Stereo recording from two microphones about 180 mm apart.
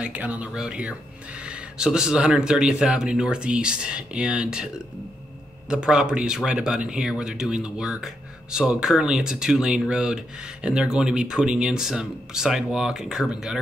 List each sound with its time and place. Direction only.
0.0 s speech: 5° right (ahead or behind)